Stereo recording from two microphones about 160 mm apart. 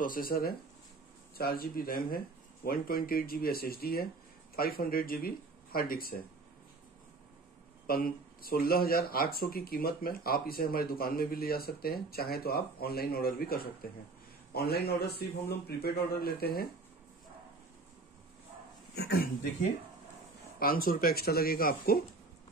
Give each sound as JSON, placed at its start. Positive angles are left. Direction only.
{"t": 0.0, "sound": "speech", "side_deg": 60}
{"t": 7.8, "sound": "speech", "side_deg": 65}
{"t": 18.9, "sound": "speech", "side_deg": 80}
{"t": 20.5, "sound": "speech", "side_deg": 65}